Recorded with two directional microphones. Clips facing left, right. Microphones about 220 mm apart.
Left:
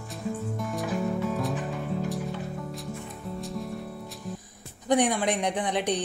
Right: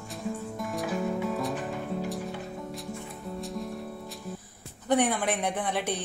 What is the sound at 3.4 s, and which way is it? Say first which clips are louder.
Music: even; centre (ahead or behind).